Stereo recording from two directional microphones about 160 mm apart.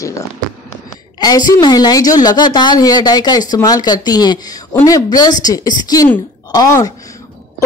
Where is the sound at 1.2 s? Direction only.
25° left (ahead or behind).